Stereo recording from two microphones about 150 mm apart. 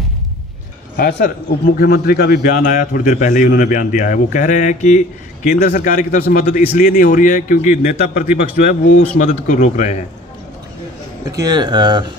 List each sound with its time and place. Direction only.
0.9 s a man's voice: 80° left
6.7 s speech: 85° left
7.1 s a man's voice: 60° left (ahead or behind)
11.2 s speech: 25° right (ahead or behind)